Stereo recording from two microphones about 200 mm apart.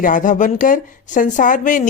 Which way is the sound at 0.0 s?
40° left (ahead or behind).